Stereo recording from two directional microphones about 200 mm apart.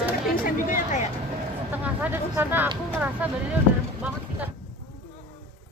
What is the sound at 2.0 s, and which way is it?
Speech, 10° right (ahead or behind).